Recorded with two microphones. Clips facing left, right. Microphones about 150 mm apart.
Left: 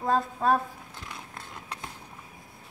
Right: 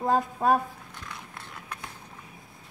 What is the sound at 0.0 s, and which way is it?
Speech, 15° right (ahead or behind).